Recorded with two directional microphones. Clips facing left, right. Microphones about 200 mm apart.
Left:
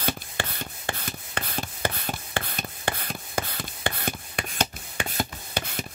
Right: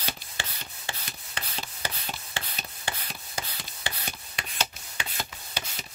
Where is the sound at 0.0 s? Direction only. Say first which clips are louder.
Left 8 dB; 55° left (ahead or behind).